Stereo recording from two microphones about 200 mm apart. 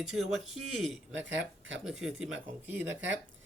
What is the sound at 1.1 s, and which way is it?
Speech, 65° right (ahead or behind).